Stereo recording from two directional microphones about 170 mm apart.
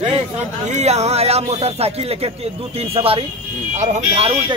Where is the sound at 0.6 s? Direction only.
40° right (ahead or behind).